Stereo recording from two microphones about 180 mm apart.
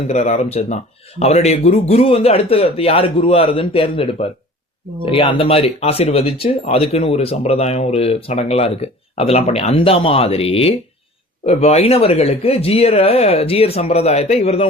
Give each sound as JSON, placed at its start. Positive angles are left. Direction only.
{"t": 0.1, "sound": "speech", "side_deg": 40}